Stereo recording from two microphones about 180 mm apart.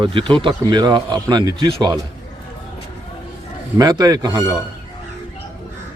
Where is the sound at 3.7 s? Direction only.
20° right (ahead or behind).